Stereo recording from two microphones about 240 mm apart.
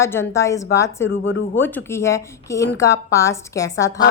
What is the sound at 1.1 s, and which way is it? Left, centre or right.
Speech, left.